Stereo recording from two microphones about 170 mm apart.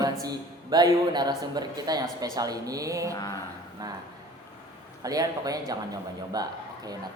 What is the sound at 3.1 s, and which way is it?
Mantra, 20° left (ahead or behind).